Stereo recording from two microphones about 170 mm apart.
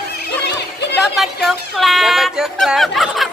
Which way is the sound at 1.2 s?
Centre (ahead or behind).